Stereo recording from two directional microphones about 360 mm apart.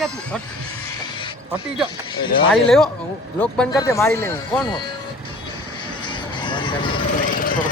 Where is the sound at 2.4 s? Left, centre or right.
Centre.